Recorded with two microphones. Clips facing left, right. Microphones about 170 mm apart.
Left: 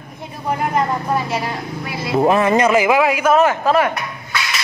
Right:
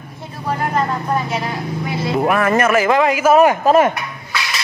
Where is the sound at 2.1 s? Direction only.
20° left (ahead or behind).